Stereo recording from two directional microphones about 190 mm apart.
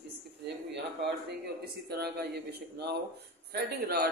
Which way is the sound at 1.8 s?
60° right (ahead or behind).